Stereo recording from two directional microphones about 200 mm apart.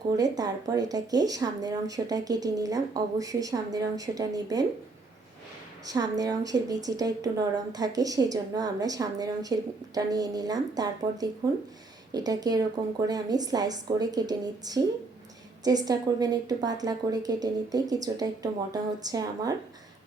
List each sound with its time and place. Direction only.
0.2 s a woman's voice: 20° right (ahead or behind)
5.8 s a woman's voice: 20° right (ahead or behind)